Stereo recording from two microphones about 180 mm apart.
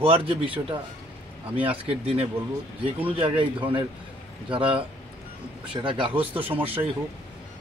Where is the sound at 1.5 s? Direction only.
30° right (ahead or behind).